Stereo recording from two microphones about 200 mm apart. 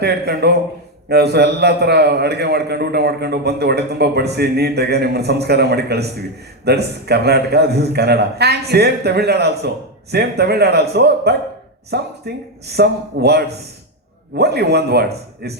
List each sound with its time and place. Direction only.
0.0 s a man's voice: 55° right (ahead or behind)